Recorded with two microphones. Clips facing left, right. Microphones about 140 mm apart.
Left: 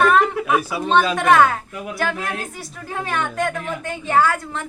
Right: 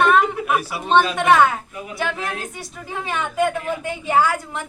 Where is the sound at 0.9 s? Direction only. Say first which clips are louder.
Even; centre (ahead or behind).